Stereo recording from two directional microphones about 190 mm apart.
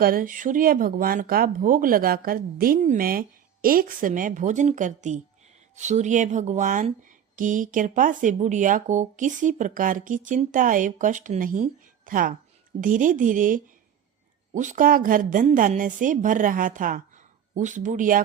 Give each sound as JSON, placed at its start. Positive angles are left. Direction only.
{"t": 0.0, "sound": "speech", "side_deg": -45}